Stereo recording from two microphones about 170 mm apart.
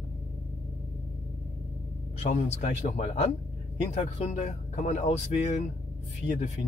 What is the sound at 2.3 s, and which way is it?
Speech, 40° left (ahead or behind).